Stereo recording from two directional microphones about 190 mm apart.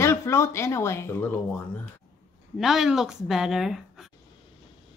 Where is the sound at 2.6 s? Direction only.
Centre (ahead or behind).